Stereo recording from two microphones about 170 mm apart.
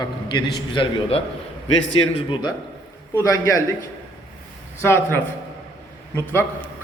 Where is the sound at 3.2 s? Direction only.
20° left (ahead or behind).